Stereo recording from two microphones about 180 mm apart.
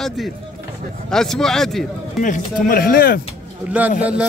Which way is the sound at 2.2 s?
45° left (ahead or behind).